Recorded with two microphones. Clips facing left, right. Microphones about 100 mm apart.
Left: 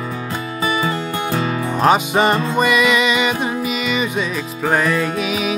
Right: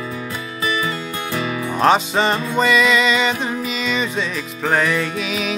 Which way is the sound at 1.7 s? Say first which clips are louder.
Left 1 dB; 10° left (ahead or behind).